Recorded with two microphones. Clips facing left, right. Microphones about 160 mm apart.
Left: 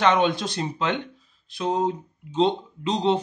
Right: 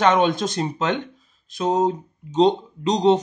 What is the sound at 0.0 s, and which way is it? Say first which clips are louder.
Speech: right 3 dB; 45° right (ahead or behind).